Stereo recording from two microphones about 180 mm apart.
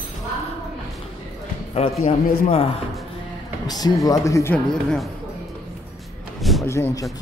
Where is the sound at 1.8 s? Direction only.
35° left (ahead or behind).